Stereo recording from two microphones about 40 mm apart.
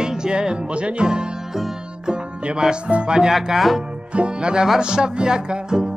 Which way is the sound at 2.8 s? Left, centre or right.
Right.